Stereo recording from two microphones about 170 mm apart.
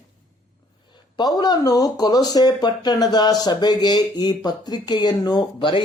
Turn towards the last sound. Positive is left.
turn(degrees=30)  # may be behind; listen again after turning